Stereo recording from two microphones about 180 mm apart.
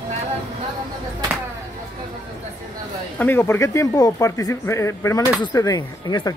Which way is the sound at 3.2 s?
15° left (ahead or behind).